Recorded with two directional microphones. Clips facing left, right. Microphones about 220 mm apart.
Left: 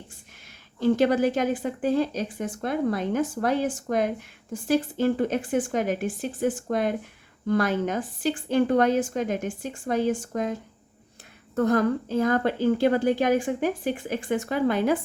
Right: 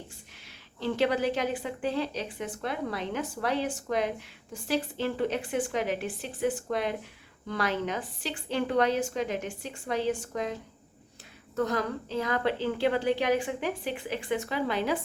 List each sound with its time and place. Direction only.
0.8 s speech: 45° left (ahead or behind)